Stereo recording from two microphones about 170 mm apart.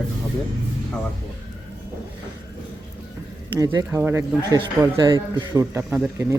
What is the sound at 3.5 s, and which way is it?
Speech, 20° right (ahead or behind).